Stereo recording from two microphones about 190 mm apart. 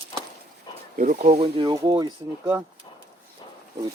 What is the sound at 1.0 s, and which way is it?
Speech, 40° right (ahead or behind).